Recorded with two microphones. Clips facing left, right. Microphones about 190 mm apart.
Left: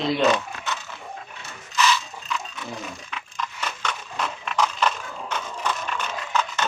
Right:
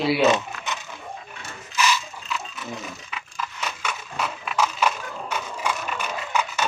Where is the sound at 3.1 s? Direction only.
5° right (ahead or behind).